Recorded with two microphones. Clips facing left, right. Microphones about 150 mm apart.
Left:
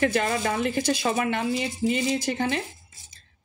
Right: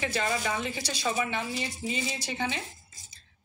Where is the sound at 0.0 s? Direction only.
55° left (ahead or behind).